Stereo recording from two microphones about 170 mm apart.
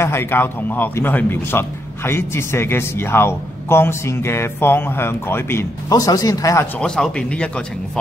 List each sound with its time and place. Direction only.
0.0 s a man's voice: 15° left (ahead or behind)
6.8 s speech: 5° left (ahead or behind)